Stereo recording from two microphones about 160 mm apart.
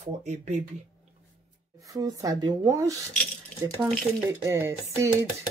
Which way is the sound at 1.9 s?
20° right (ahead or behind).